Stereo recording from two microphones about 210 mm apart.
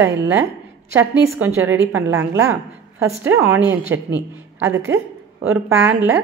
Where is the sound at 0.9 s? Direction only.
10° right (ahead or behind).